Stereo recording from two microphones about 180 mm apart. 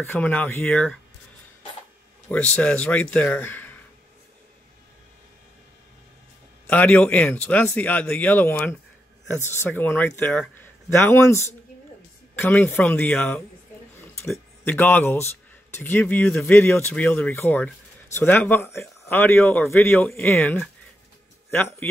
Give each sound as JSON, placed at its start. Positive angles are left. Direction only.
{"t": 0.0, "sound": "speech", "side_deg": 10}
{"t": 2.2, "sound": "speech", "side_deg": 10}
{"t": 6.7, "sound": "speech", "side_deg": 10}
{"t": 14.6, "sound": "a man's voice", "side_deg": 10}